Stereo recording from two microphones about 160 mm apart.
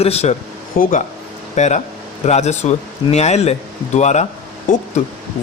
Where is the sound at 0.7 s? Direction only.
60° left (ahead or behind).